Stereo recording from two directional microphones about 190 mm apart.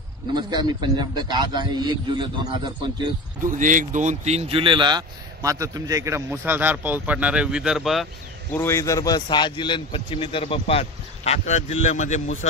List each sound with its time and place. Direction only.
0.3 s a man's voice: 20° right (ahead or behind)
3.5 s speech: 40° right (ahead or behind); by 8.1 s centre (ahead or behind)
8.5 s a man's voice: 15° left (ahead or behind); by 12.4 s 40° left (ahead or behind)